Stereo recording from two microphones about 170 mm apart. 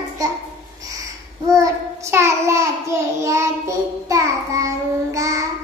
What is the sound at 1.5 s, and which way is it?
Child singing, 20° right (ahead or behind).